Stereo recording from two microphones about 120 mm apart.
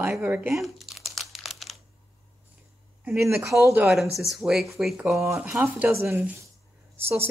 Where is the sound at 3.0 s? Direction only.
20° right (ahead or behind).